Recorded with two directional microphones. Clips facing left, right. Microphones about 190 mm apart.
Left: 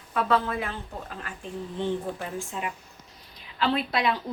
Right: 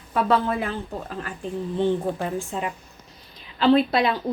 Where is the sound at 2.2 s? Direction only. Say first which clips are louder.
Right 6 dB; 35° right (ahead or behind).